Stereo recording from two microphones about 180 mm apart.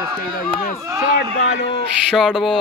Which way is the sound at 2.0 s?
Centre (ahead or behind).